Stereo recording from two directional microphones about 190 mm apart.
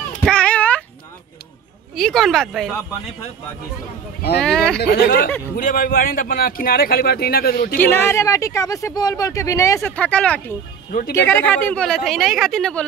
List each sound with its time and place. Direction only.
0.2 s a sound: 5° left (ahead or behind)
2.0 s a woman's voice: centre (ahead or behind)
4.4 s a woman's voice: 5° left (ahead or behind)
4.7 s speech: 55° left (ahead or behind)
7.8 s a woman's voice: 10° left (ahead or behind)